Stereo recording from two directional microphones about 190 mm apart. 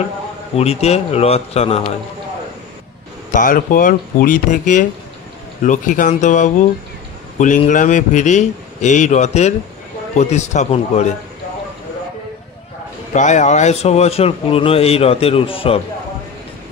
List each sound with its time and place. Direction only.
0.6 s speech: 35° left (ahead or behind)
3.3 s speech: 45° left (ahead or behind)
13.1 s speech: 40° left (ahead or behind)